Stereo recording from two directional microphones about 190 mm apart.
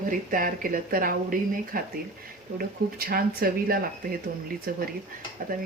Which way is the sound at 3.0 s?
50° right (ahead or behind).